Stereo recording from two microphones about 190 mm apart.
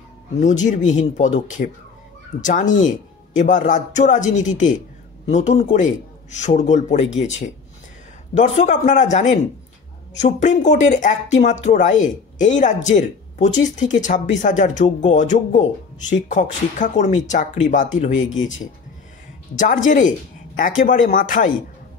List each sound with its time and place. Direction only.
0.4 s speech: 40° left (ahead or behind)
19.5 s speech: 40° left (ahead or behind)